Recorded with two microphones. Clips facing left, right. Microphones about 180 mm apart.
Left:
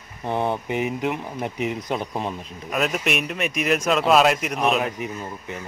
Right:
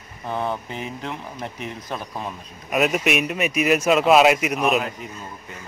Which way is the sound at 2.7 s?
5° right (ahead or behind).